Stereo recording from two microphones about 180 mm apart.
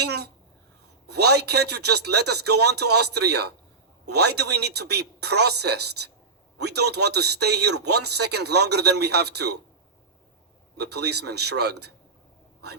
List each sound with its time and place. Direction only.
1.0 s speech: 65° right (ahead or behind)
10.8 s speech: 65° right (ahead or behind)